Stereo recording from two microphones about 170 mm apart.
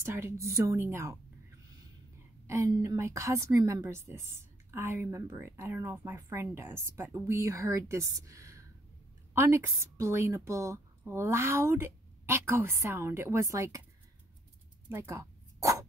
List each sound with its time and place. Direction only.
0.0 s a woman's voice: 15° right (ahead or behind)
2.4 s a woman's voice: 15° right (ahead or behind)
14.9 s dog: 15° right (ahead or behind)